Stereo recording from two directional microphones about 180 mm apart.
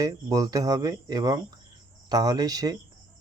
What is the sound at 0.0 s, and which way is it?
Speech, 20° right (ahead or behind).